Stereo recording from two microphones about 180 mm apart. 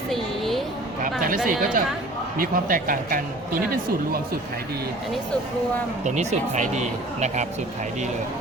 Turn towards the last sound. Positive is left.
turn(degrees=-40)  # may be behind; listen again after turning